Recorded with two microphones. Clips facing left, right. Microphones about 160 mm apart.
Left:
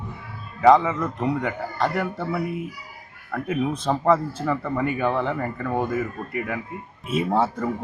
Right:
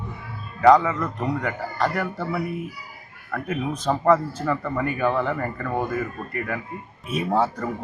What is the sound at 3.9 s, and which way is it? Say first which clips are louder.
Speech: right 2 dB; 10° left (ahead or behind).